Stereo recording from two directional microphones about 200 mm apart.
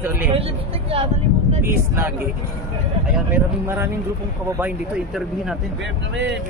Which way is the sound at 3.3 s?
10° right (ahead or behind).